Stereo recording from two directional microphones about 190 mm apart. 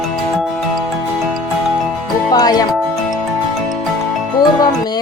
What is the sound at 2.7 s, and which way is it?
Music, centre (ahead or behind).